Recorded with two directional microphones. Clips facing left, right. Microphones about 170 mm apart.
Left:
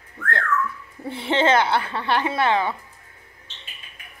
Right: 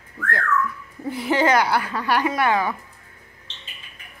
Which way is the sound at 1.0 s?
25° left (ahead or behind).